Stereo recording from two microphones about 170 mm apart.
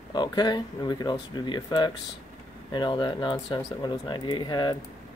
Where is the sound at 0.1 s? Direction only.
25° left (ahead or behind).